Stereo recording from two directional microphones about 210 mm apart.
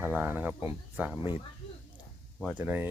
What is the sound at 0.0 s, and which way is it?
Speech, 10° right (ahead or behind).